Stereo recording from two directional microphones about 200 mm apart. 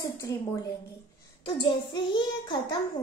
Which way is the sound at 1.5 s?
25° left (ahead or behind).